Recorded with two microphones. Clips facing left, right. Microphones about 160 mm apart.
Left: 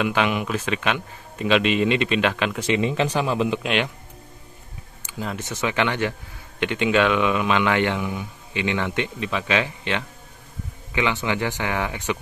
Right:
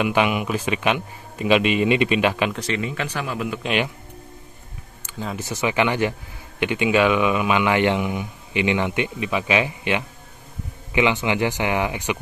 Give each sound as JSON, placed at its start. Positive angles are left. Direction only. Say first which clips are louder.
{"t": 0.0, "sound": "speech", "louder": "right 2 dB", "side_deg": -10}
{"t": 2.5, "sound": "speech", "louder": "left 4 dB", "side_deg": 15}
{"t": 3.6, "sound": "speech", "louder": "right 1 dB", "side_deg": -5}
{"t": 5.2, "sound": "speech", "louder": "right 2 dB", "side_deg": -5}